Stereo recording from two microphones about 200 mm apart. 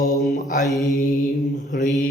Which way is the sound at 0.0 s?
40° left (ahead or behind).